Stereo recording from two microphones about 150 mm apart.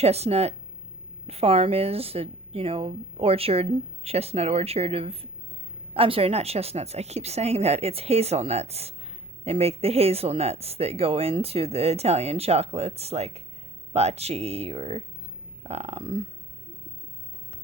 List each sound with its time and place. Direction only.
0.0 s speech: 45° right (ahead or behind)